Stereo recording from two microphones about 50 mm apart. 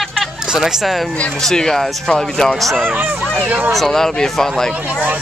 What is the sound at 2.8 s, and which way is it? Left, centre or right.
Speech, right.